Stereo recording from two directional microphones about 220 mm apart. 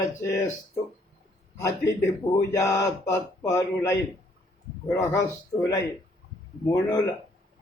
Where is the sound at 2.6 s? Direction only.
15° left (ahead or behind).